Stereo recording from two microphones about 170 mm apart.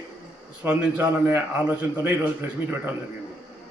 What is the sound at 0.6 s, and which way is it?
Speech, 15° right (ahead or behind).